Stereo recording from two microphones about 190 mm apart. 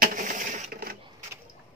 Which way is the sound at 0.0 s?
45° right (ahead or behind).